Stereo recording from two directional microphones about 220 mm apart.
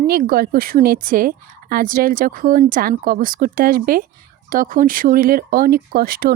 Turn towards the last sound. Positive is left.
turn(degrees=-45)  # may be behind; listen again after turning